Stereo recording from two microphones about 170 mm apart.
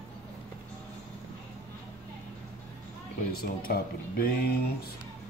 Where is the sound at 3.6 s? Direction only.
65° left (ahead or behind).